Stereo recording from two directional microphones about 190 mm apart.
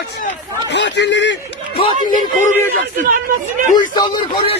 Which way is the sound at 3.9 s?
25° left (ahead or behind).